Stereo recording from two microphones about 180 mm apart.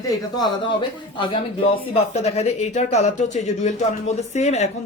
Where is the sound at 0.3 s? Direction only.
25° left (ahead or behind).